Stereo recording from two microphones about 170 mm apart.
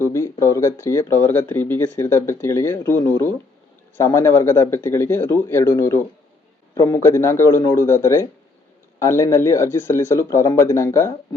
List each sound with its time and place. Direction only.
0.0 s speech: 15° left (ahead or behind)